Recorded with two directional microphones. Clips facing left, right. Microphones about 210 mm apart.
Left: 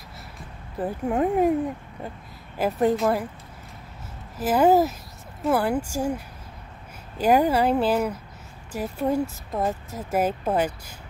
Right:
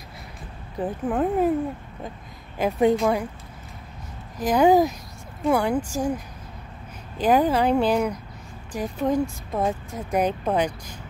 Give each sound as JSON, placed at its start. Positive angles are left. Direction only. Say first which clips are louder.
{"t": 0.7, "sound": "speech", "louder": "even", "side_deg": 10}
{"t": 2.6, "sound": "speech", "louder": "right 2 dB", "side_deg": 5}
{"t": 4.4, "sound": "speech", "louder": "right 1 dB", "side_deg": 5}